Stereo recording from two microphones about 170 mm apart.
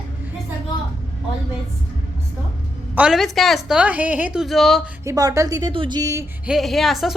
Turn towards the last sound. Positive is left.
turn(degrees=0)  # may be behind; listen again after turning